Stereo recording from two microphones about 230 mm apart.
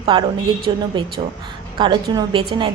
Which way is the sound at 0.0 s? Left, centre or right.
Right.